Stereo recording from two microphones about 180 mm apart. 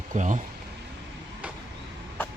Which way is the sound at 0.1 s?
45° right (ahead or behind).